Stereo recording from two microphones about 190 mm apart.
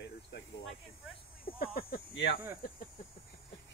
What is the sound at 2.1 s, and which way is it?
Speech, 85° left.